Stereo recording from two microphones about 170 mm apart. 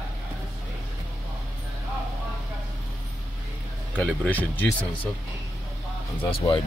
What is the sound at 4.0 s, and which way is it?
Speech, 10° left (ahead or behind).